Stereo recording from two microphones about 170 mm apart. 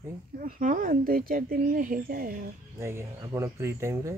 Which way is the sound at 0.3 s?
55° right (ahead or behind).